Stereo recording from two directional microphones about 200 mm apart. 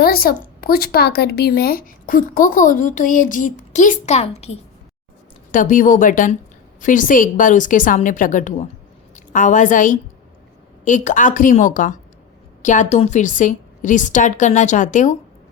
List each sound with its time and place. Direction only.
0.0 s a woman's voice: 50° left (ahead or behind)